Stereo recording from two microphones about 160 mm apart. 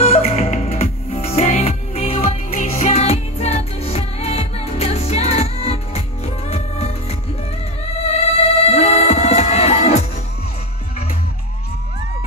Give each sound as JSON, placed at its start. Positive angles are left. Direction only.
{"t": 0.0, "sound": "music", "side_deg": 40}
{"t": 2.1, "sound": "music", "side_deg": 55}
{"t": 8.6, "sound": "music", "side_deg": 45}